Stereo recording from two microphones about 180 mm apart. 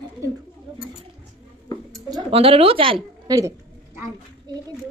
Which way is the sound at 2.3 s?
30° right (ahead or behind).